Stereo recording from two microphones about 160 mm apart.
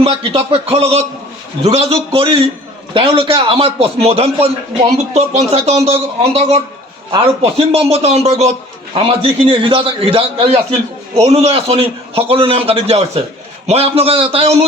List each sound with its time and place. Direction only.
0.0 s a man's voice: 35° right (ahead or behind)